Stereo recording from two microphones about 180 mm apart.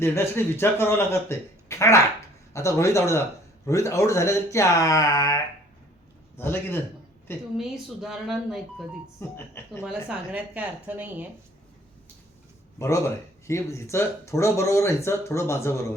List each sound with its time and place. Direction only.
0.0 s speech: 15° left (ahead or behind)
7.5 s speech: centre (ahead or behind)
9.2 s speech: 15° left (ahead or behind)
9.8 s speech: 5° right (ahead or behind)
12.8 s speech: 15° left (ahead or behind)